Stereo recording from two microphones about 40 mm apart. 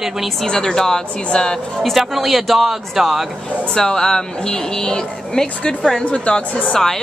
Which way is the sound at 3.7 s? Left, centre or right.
Centre.